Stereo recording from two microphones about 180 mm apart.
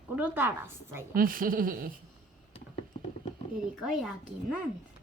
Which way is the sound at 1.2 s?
50° right (ahead or behind).